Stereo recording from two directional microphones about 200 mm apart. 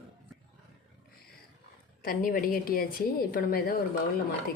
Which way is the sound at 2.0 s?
45° left (ahead or behind).